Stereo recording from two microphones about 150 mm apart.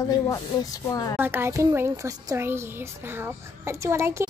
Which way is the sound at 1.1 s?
15° right (ahead or behind).